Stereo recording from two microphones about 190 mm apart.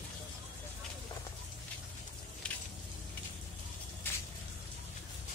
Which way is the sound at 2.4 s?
5° left (ahead or behind).